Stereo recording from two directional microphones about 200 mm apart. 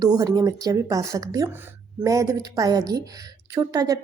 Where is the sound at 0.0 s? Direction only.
20° right (ahead or behind).